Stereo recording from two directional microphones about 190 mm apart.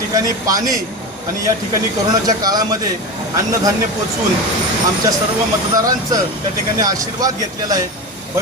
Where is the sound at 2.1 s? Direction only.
20° right (ahead or behind).